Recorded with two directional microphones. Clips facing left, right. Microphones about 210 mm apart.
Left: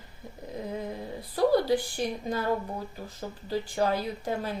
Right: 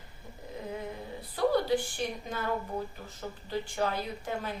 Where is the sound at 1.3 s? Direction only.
40° left (ahead or behind).